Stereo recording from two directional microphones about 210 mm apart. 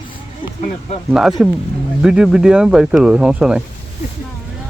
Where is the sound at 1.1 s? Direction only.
Centre (ahead or behind).